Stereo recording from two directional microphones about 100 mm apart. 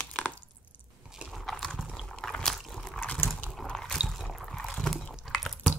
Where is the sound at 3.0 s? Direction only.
10° left (ahead or behind).